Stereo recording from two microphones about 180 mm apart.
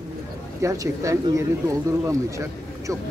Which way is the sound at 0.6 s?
20° right (ahead or behind).